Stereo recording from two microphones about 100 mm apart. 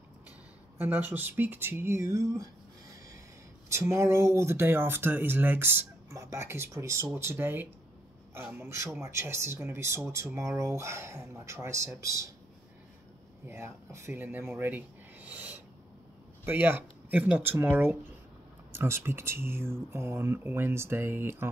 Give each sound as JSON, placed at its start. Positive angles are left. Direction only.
{"t": 0.7, "sound": "speech", "side_deg": -20}
{"t": 3.6, "sound": "speech", "side_deg": -30}
{"t": 13.5, "sound": "speech", "side_deg": -25}